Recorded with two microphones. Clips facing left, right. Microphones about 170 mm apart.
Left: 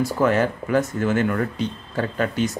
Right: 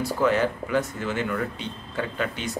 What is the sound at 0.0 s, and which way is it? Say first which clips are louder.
Speech: left 3 dB; 45° left (ahead or behind).